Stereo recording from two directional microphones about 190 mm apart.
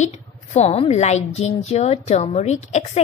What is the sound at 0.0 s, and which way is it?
A woman's voice, 35° left (ahead or behind).